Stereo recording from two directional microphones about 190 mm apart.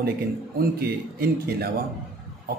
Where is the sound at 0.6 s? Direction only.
55° right (ahead or behind).